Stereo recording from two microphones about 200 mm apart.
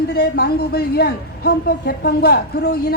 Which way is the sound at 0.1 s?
50° left (ahead or behind).